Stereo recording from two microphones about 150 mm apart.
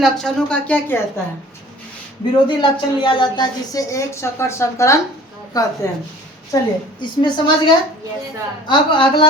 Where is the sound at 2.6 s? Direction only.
30° left (ahead or behind).